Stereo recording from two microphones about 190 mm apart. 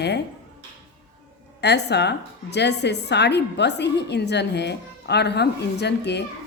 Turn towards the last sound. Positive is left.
turn(degrees=60)  # may be behind; listen again after turning